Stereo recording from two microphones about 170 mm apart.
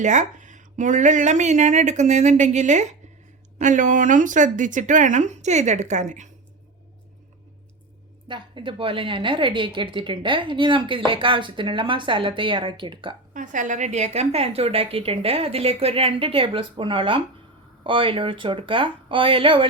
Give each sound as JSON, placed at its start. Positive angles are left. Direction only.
{"t": 0.0, "sound": "speech", "side_deg": -45}
{"t": 8.3, "sound": "a woman's voice", "side_deg": -30}
{"t": 13.3, "sound": "a woman's voice", "side_deg": -50}